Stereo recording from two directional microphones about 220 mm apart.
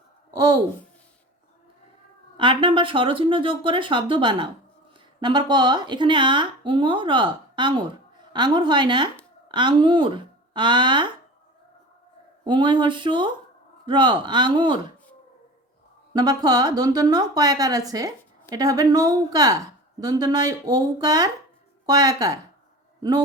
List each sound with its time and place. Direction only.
0.3 s speech: 15° right (ahead or behind)
2.4 s speech: 20° right (ahead or behind)
12.5 s speech: 20° right (ahead or behind)
16.1 s a woman's voice: 20° right (ahead or behind)